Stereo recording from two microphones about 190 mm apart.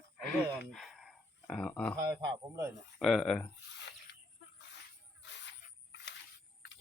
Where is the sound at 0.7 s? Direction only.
Centre (ahead or behind).